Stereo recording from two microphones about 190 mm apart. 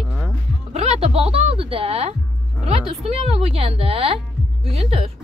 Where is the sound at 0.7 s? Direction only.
35° right (ahead or behind).